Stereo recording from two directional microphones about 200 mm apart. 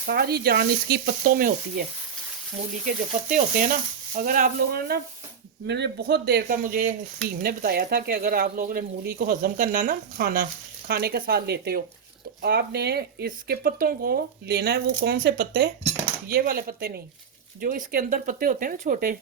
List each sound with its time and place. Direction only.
0.0 s speech: 50° right (ahead or behind)
2.8 s speech: 40° right (ahead or behind)